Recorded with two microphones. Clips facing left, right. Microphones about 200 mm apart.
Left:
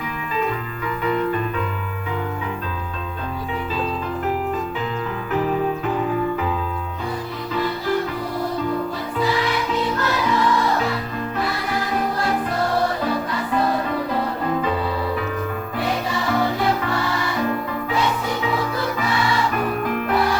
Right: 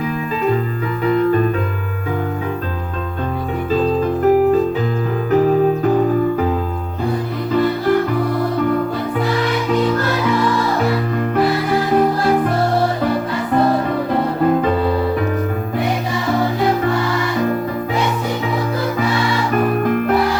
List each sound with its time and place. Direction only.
1.0 s music: 40° right (ahead or behind)
3.7 s music: 45° right (ahead or behind)
5.3 s music: 40° right (ahead or behind)
7.5 s music: 55° right (ahead or behind)
14.1 s music: 55° right (ahead or behind)
19.5 s music: 50° right (ahead or behind)